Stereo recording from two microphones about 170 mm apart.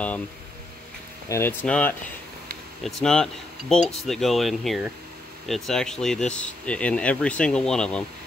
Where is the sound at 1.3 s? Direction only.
15° left (ahead or behind).